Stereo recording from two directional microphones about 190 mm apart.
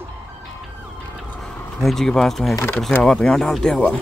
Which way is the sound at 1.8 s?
Centre (ahead or behind).